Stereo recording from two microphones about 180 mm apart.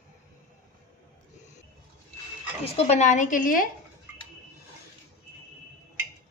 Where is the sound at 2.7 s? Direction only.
40° left (ahead or behind).